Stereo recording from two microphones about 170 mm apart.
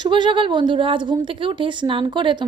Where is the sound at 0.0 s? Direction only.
30° right (ahead or behind).